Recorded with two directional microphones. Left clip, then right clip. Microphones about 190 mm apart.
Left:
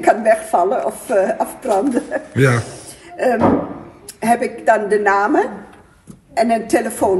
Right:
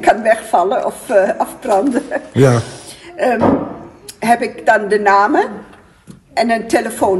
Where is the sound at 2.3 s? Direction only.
15° right (ahead or behind).